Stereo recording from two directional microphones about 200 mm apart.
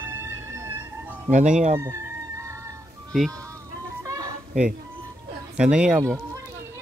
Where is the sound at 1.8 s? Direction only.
15° right (ahead or behind).